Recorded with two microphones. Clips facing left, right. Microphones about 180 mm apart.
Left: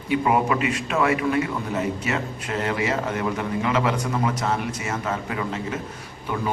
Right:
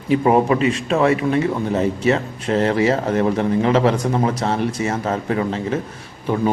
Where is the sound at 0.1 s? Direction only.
30° right (ahead or behind).